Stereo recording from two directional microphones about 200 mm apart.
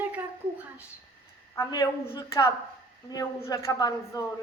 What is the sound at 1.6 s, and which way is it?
A woman's voice, 20° left (ahead or behind).